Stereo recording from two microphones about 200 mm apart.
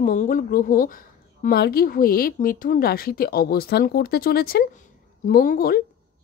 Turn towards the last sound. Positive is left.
turn(degrees=45)  # may be behind; listen again after turning